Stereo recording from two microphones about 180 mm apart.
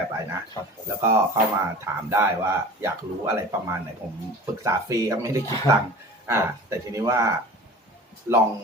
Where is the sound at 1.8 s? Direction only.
15° right (ahead or behind).